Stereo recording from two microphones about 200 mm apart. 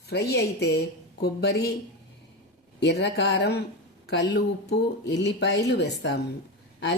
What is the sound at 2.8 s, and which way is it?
A woman's voice, 60° left (ahead or behind).